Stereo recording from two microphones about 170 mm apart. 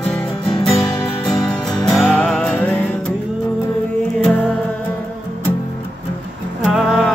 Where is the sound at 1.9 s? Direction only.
5° left (ahead or behind).